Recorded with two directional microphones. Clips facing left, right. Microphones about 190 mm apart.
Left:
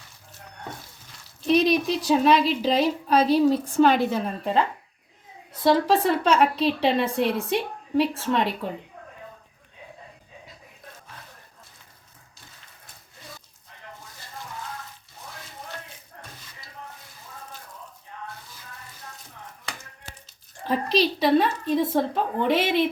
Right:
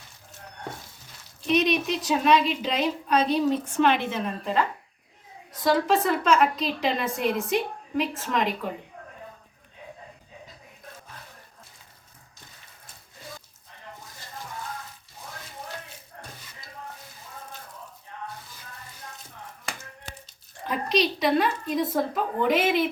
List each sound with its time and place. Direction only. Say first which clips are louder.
1.5 s a woman's voice: left 3 dB; 35° left (ahead or behind)
5.6 s a woman's voice: left 2 dB; 30° left (ahead or behind)
20.7 s a woman's voice: left 2 dB; 30° left (ahead or behind)